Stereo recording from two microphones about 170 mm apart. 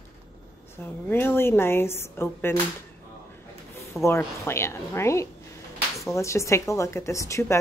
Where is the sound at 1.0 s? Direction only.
15° left (ahead or behind).